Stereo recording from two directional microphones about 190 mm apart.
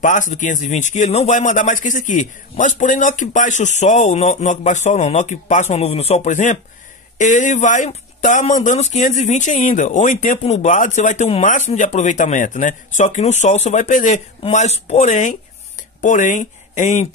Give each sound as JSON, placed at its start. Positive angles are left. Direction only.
{"t": 0.0, "sound": "speech", "side_deg": 40}